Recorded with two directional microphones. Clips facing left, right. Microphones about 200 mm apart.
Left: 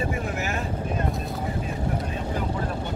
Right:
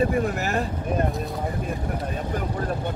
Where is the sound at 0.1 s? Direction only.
35° right (ahead or behind).